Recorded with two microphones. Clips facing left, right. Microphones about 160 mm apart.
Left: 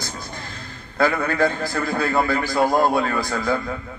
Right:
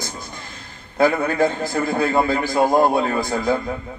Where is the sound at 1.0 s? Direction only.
15° right (ahead or behind).